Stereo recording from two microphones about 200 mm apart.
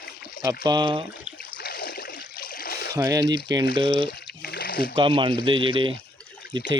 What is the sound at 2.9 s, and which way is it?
Speech, 15° right (ahead or behind).